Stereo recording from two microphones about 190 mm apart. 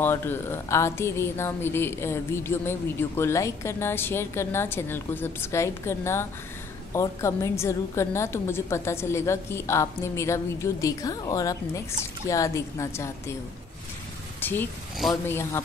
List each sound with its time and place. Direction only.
0.0 s a woman's voice: 10° left (ahead or behind)
14.4 s a sound: 10° left (ahead or behind)
15.2 s a woman's voice: 10° left (ahead or behind)